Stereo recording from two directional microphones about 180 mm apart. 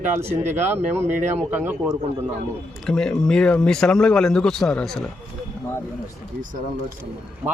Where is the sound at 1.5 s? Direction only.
10° right (ahead or behind).